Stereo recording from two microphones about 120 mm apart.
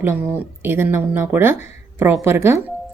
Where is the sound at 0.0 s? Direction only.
15° right (ahead or behind).